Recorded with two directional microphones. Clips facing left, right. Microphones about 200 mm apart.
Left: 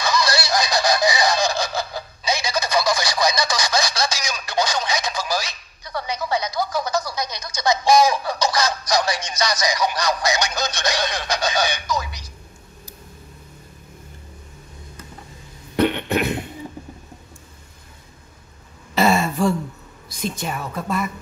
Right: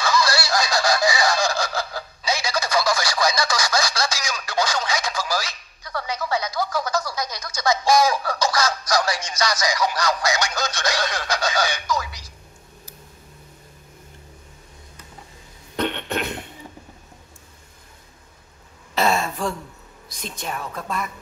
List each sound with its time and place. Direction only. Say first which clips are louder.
0.0 s fowl: even; 20° left (ahead or behind)
15.7 s cough: left 6 dB; 10° left (ahead or behind)
18.9 s throat clearing: left 4 dB; centre (ahead or behind)
20.1 s a sound: left 5 dB; centre (ahead or behind)